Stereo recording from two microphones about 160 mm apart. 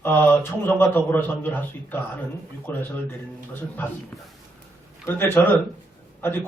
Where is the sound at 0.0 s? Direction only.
10° left (ahead or behind).